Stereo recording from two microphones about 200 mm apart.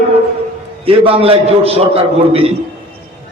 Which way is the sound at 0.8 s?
30° right (ahead or behind).